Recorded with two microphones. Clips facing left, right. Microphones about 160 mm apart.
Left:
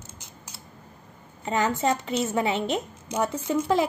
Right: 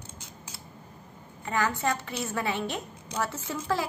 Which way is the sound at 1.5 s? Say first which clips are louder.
Left 4 dB; 20° left (ahead or behind).